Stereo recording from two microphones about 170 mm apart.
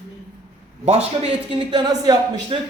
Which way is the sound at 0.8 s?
35° right (ahead or behind).